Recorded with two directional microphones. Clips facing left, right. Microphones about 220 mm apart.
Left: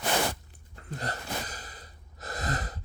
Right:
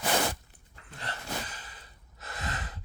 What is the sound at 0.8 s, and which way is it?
Gasp, 40° left (ahead or behind).